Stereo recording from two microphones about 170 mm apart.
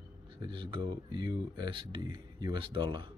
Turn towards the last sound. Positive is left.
turn(degrees=-30)  # may be behind; listen again after turning